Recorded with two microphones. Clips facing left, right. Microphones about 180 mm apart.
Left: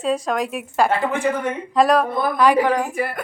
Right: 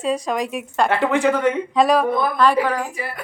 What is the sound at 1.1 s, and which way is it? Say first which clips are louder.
Speech: right 4 dB; 75° right (ahead or behind).